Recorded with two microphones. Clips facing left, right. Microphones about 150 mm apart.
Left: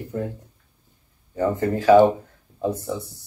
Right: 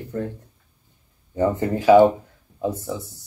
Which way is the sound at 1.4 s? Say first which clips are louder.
Right 1 dB; 15° right (ahead or behind).